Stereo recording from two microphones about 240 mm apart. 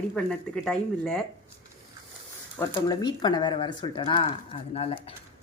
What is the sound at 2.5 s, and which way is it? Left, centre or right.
Speech, centre.